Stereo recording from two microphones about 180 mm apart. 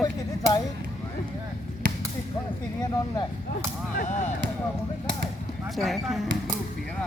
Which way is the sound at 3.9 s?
45° left (ahead or behind).